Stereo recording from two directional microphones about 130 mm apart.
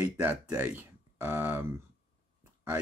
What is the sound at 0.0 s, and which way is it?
Speech, 15° right (ahead or behind).